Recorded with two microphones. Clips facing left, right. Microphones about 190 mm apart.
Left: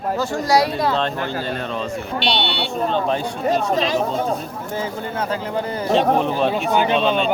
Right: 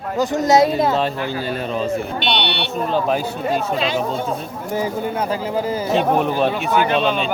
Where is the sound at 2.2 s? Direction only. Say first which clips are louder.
Even; 60° right (ahead or behind).